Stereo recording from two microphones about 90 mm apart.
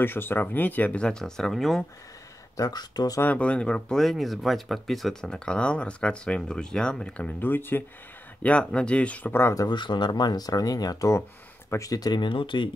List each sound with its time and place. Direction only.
0.0 s speech: 25° left (ahead or behind); by 1.9 s 5° left (ahead or behind)
2.5 s speech: 45° left (ahead or behind)
3.2 s speech: 15° left (ahead or behind)
9.6 s speech: 55° left (ahead or behind)